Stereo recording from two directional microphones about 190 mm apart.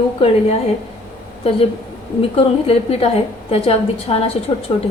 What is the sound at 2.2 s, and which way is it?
A woman's voice, 30° left (ahead or behind).